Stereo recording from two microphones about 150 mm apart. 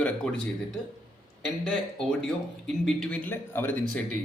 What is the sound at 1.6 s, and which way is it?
A man's voice, 5° left (ahead or behind).